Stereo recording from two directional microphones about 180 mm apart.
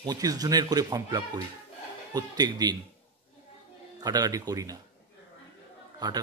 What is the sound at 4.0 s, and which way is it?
Speech, 20° right (ahead or behind).